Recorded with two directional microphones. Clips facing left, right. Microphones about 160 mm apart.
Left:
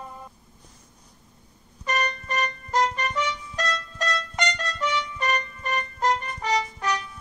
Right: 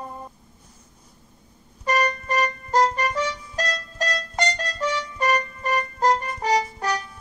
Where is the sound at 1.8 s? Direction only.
35° right (ahead or behind).